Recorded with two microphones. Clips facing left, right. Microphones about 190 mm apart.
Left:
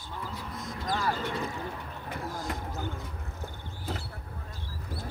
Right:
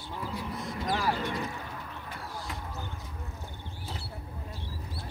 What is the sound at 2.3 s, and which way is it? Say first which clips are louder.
Basketball bounce: left 3 dB; 45° left (ahead or behind).